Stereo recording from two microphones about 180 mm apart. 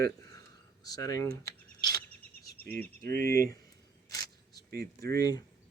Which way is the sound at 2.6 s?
10° left (ahead or behind).